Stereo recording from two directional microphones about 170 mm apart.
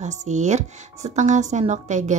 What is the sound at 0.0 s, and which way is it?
Speech, 45° right (ahead or behind).